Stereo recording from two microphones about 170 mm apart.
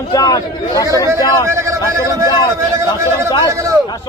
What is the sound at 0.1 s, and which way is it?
Speech, 25° left (ahead or behind).